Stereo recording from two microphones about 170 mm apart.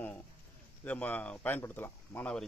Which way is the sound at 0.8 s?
10° left (ahead or behind).